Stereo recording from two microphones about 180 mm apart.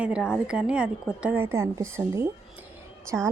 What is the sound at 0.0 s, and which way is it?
A woman's voice, 5° right (ahead or behind).